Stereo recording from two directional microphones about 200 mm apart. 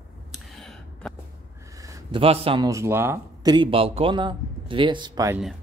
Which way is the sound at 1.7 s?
15° right (ahead or behind).